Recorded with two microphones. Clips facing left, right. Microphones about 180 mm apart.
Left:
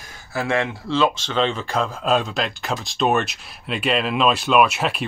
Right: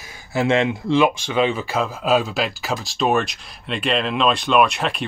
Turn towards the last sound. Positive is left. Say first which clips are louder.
# even
turn(degrees=5)  # may be behind; listen again after turning